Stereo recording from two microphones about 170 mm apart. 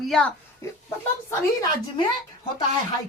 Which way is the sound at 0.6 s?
15° left (ahead or behind).